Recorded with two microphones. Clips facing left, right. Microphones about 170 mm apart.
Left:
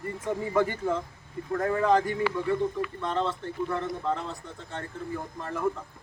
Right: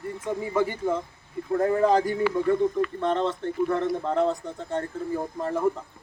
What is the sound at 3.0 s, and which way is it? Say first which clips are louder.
Speech: right 2 dB; 55° right (ahead or behind).